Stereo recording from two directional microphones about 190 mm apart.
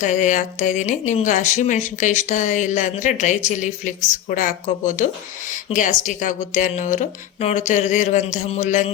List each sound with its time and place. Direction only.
0.0 s speech: 40° left (ahead or behind)